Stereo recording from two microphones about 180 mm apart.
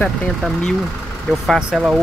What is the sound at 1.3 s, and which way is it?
Speech, centre (ahead or behind).